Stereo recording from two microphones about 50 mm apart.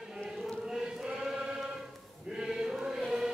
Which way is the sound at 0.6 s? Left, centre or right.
Centre.